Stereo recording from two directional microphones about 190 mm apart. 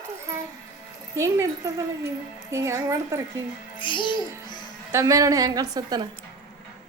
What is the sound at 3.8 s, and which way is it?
Speech, 25° left (ahead or behind).